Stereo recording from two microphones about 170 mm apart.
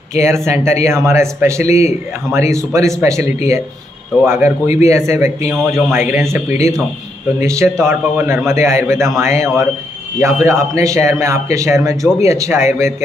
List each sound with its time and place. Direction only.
0.1 s speech: 15° right (ahead or behind)
7.4 s speech: 15° right (ahead or behind)